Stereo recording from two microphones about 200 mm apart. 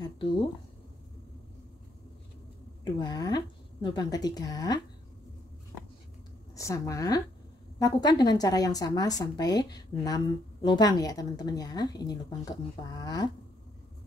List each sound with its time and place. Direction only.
0.0 s speech: 25° left (ahead or behind)
2.8 s a woman's voice: 20° left (ahead or behind)
6.5 s a woman's voice: 15° left (ahead or behind)